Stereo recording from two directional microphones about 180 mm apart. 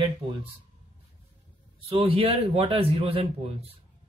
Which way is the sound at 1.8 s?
30° right (ahead or behind).